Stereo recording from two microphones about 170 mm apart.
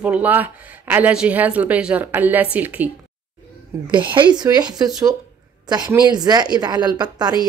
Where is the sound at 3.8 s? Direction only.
30° right (ahead or behind).